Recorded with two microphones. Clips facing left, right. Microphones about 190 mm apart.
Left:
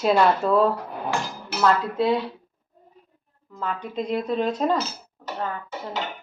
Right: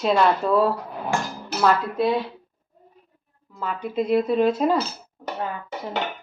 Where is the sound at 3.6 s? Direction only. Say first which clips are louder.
Right 3 dB; 5° right (ahead or behind).